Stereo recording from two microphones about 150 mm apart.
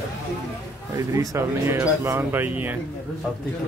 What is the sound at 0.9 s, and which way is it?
Speech, 20° right (ahead or behind).